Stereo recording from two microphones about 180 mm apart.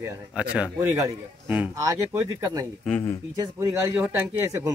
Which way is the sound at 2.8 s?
5° left (ahead or behind).